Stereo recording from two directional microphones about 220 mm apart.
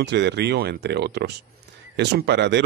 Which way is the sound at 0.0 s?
50° right (ahead or behind).